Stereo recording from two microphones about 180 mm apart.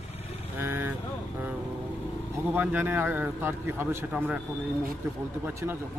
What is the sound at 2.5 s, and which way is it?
A man's voice, 10° right (ahead or behind).